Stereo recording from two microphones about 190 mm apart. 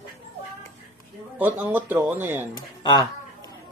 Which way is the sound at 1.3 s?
10° right (ahead or behind).